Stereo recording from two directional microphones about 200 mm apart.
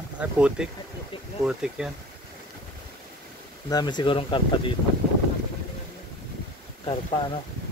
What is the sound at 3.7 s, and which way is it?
Speech, 20° left (ahead or behind).